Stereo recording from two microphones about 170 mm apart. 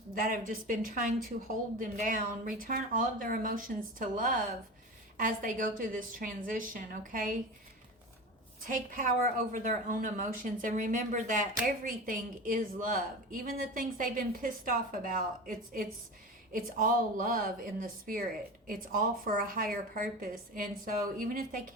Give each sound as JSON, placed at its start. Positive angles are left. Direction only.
{"t": 0.1, "sound": "a woman's voice", "side_deg": -55}
{"t": 8.6, "sound": "a woman's voice", "side_deg": -50}